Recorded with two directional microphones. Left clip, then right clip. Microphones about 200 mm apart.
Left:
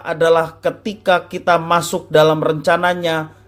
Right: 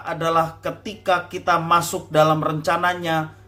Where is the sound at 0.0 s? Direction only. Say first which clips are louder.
Left 6 dB; 45° left (ahead or behind).